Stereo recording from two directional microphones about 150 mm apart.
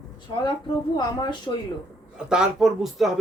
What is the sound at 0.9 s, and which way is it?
Speech, 25° left (ahead or behind).